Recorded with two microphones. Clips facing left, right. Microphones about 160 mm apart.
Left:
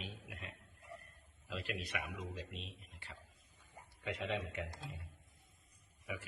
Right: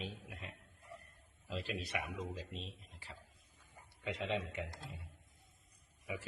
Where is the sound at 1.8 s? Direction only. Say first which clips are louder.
Right 2 dB; 35° right (ahead or behind).